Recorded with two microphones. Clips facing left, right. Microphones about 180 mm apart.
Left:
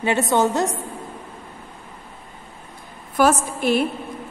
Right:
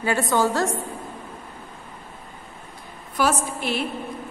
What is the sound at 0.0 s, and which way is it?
Speech, 20° left (ahead or behind).